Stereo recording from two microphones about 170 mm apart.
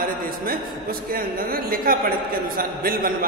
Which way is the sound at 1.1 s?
60° right (ahead or behind).